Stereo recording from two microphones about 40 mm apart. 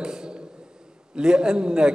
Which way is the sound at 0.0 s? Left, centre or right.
Centre.